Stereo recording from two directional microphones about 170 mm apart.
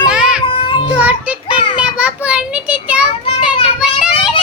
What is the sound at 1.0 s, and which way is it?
A child's voice, 10° right (ahead or behind).